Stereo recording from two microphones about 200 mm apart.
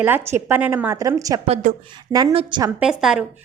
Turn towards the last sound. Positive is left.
turn(degrees=0)  # may be behind; listen again after turning